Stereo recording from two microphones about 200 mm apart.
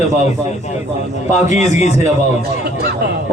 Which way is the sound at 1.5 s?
35° left (ahead or behind).